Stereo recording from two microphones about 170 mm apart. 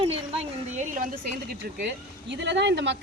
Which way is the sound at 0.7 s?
45° right (ahead or behind).